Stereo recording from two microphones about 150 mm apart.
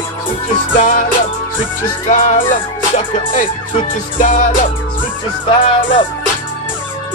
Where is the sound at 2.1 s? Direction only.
55° left (ahead or behind).